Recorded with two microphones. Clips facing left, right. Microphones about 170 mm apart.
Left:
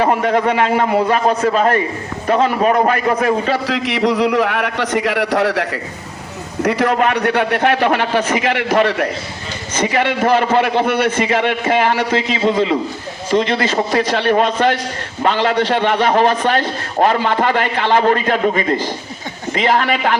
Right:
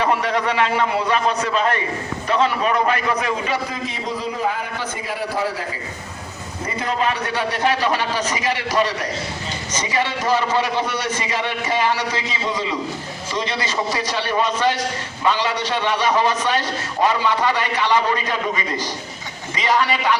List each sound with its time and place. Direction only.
0.0 s a man's voice: 50° left (ahead or behind)